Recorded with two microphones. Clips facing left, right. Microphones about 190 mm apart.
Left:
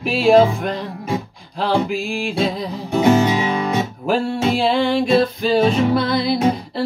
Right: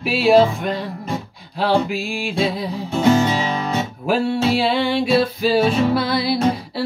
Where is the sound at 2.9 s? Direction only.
15° left (ahead or behind).